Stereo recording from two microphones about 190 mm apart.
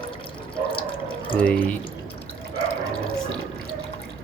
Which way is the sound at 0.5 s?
25° left (ahead or behind).